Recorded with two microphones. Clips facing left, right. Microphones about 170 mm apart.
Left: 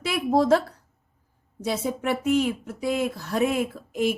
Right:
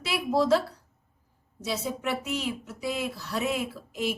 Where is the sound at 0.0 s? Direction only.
50° left (ahead or behind).